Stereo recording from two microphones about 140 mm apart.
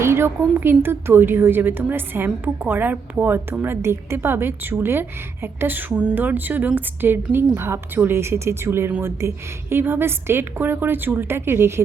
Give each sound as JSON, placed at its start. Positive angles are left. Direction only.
{"t": 0.0, "sound": "a woman's voice", "side_deg": -15}